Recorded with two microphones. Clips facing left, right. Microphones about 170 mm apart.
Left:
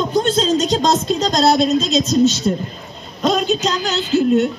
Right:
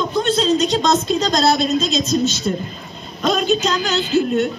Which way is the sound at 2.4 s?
25° left (ahead or behind).